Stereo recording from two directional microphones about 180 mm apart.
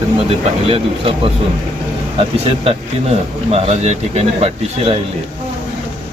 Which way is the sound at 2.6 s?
35° right (ahead or behind).